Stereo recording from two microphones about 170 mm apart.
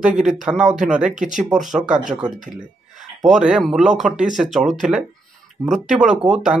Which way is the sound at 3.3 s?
5° right (ahead or behind).